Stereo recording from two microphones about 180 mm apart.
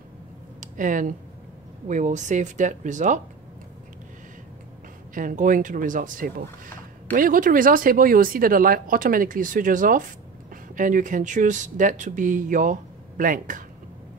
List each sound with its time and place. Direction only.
0.6 s speech: 45° right (ahead or behind)
5.1 s speech: 45° right (ahead or behind)